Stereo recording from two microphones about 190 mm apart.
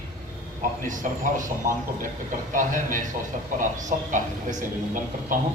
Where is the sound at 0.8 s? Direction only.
40° right (ahead or behind).